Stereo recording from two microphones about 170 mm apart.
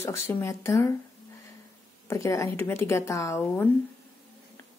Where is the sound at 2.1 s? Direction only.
15° left (ahead or behind).